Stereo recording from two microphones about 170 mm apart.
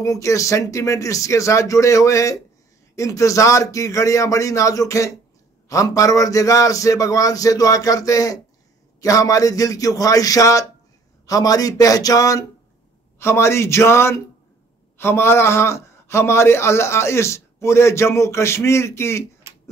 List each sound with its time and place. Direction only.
0.0 s a man's voice: 20° left (ahead or behind)
19.4 s tick-tock: 15° right (ahead or behind)